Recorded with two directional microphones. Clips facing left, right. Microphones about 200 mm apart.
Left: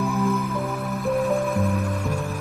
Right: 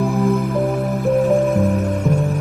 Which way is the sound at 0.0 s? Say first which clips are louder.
Right 6 dB; 35° right (ahead or behind).